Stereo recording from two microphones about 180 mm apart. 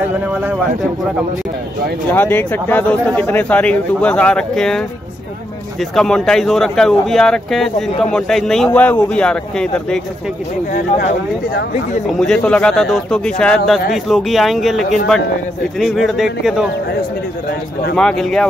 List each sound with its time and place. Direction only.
0.0 s a man's voice: 5° right (ahead or behind)
2.1 s speech: 10° left (ahead or behind)
10.7 s speech: 50° left (ahead or behind)
12.2 s speech: 5° left (ahead or behind)
17.9 s speech: 5° left (ahead or behind)